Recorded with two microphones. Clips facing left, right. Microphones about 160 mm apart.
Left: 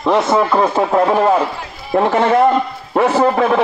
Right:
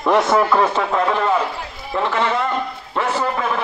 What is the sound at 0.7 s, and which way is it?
A man's voice, 40° left (ahead or behind).